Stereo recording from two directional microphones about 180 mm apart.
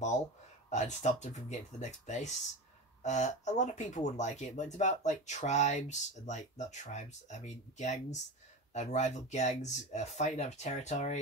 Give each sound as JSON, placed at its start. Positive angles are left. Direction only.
{"t": 0.7, "sound": "speech", "side_deg": 40}